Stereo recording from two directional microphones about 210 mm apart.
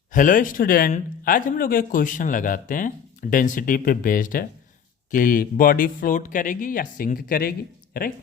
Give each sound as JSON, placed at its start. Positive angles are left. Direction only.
{"t": 0.1, "sound": "speech", "side_deg": 40}